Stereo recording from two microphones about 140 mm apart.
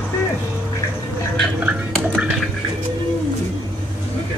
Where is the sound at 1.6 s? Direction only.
10° right (ahead or behind).